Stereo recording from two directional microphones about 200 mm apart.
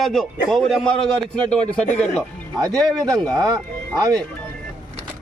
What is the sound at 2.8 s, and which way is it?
Speech, 20° right (ahead or behind).